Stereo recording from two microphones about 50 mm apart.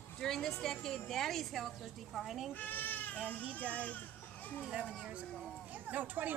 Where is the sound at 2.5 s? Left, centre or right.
Left.